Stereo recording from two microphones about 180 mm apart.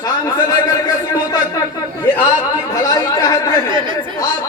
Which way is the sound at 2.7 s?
20° left (ahead or behind).